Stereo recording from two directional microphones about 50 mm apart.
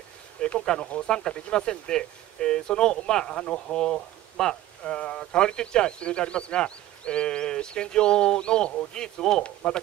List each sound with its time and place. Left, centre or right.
0.4 s speech: left
1.0 s speech: centre